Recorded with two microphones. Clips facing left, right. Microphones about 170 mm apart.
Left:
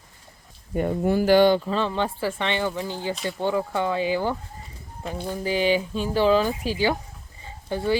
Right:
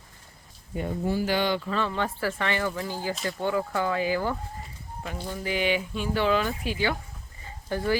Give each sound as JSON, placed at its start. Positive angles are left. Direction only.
{"t": 0.7, "sound": "speech", "side_deg": 55}
{"t": 1.6, "sound": "speech", "side_deg": 25}
{"t": 5.4, "sound": "speech", "side_deg": 30}
{"t": 7.7, "sound": "speech", "side_deg": 20}